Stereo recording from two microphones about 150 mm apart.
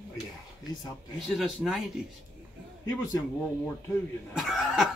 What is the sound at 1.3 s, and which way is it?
Speech, 5° right (ahead or behind).